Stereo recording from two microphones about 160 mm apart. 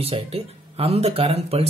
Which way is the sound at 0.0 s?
40° right (ahead or behind).